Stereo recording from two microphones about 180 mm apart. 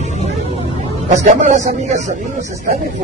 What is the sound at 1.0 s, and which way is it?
A man's voice, 45° right (ahead or behind).